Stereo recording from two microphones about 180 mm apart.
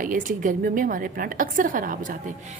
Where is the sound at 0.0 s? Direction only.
50° right (ahead or behind).